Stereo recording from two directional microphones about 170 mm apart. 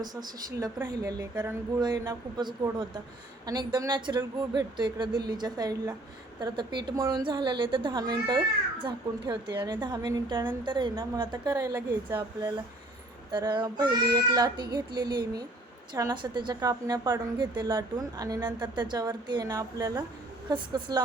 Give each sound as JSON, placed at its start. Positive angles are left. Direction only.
{"t": 0.1, "sound": "a woman's voice", "side_deg": -25}
{"t": 13.3, "sound": "a woman's voice", "side_deg": -25}